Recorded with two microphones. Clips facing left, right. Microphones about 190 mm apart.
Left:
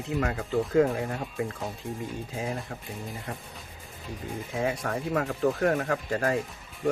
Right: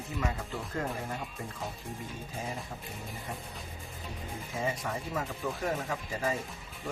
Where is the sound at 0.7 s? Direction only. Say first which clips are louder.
Left 11 dB; 80° left.